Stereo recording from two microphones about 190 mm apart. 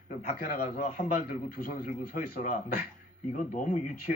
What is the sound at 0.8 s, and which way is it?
A man's voice, 45° left (ahead or behind).